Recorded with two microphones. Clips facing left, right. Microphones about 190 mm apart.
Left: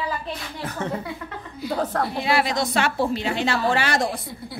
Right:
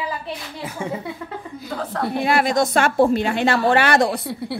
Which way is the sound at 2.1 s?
50° right (ahead or behind).